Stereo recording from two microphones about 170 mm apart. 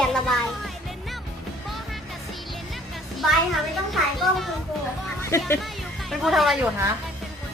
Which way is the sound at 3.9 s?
Centre (ahead or behind).